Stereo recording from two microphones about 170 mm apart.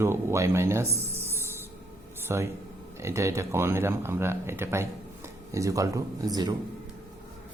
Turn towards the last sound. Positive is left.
turn(degrees=-25)  # may be behind; listen again after turning